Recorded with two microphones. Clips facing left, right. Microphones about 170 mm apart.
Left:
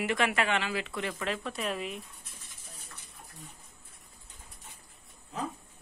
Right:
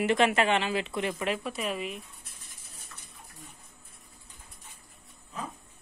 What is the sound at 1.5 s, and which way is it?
Speech, 5° right (ahead or behind).